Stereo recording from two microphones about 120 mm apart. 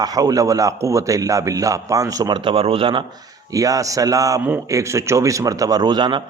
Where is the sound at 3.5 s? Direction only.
30° right (ahead or behind).